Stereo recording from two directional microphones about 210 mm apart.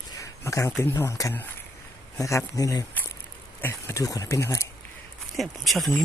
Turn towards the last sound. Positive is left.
turn(degrees=0)  # may be behind; listen again after turning